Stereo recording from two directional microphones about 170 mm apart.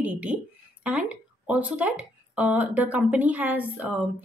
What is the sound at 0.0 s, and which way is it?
Speech, 10° right (ahead or behind).